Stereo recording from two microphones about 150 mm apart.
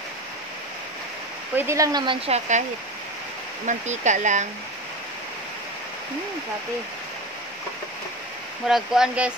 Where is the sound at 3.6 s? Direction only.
50° right (ahead or behind).